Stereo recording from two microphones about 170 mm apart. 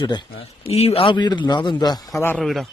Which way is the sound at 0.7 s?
35° left (ahead or behind).